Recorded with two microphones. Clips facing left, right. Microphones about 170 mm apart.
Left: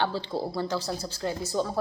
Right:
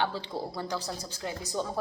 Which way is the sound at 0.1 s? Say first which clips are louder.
Left 4 dB; 35° left (ahead or behind).